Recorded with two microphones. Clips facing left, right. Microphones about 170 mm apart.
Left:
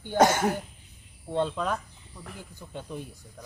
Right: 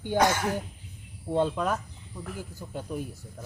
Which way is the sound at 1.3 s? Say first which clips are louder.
Right 2 dB; 10° right (ahead or behind).